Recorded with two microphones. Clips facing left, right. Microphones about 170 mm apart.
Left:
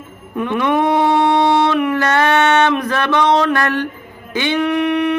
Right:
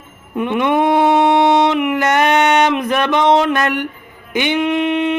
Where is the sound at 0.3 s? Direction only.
20° right (ahead or behind).